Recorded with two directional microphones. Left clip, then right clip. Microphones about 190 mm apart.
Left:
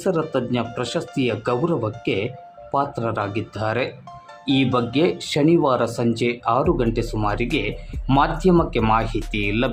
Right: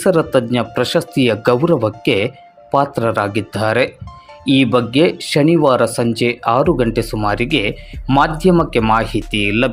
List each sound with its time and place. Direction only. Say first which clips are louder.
0.0 s speech: right 8 dB; 25° right (ahead or behind)